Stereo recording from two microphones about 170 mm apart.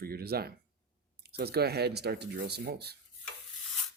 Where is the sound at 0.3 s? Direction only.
65° right (ahead or behind).